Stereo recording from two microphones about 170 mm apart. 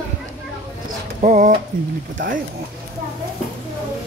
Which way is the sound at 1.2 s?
50° right (ahead or behind).